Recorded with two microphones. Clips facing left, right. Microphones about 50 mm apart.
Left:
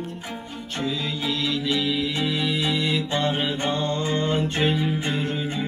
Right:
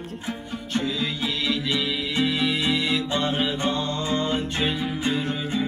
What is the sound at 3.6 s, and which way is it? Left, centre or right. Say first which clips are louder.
Music: left 1 dB; left.